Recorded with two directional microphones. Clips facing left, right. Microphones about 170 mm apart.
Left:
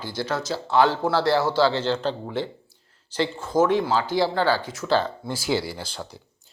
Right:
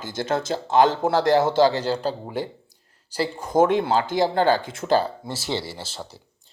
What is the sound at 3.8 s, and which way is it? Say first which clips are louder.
Speech: right 1 dB; 50° right (ahead or behind).